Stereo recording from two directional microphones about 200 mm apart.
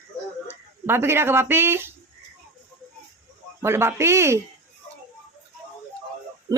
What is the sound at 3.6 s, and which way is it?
Speech, 10° right (ahead or behind).